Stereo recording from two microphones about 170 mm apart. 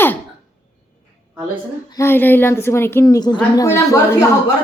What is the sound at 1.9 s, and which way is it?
A woman's voice, 15° left (ahead or behind).